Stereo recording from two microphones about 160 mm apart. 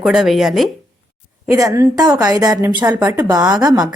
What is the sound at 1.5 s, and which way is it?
A woman's voice, 20° right (ahead or behind).